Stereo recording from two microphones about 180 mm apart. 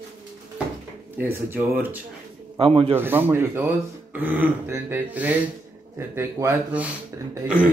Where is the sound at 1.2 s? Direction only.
10° right (ahead or behind).